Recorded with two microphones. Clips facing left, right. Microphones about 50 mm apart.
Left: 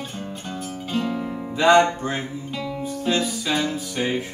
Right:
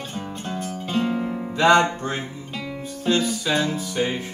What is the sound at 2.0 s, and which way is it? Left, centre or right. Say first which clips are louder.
Music: left 1 dB; centre.